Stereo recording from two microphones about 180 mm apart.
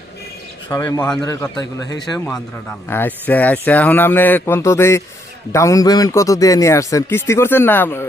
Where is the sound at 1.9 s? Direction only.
20° left (ahead or behind).